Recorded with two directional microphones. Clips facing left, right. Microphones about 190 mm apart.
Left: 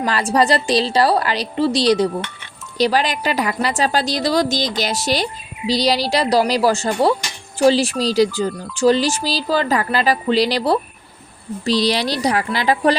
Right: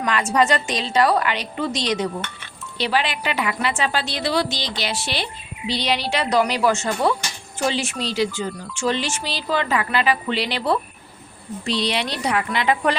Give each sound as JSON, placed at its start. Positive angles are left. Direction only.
{"t": 0.0, "sound": "a woman's voice", "side_deg": 30}